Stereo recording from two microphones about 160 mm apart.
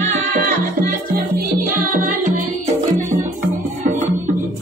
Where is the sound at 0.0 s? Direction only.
50° right (ahead or behind).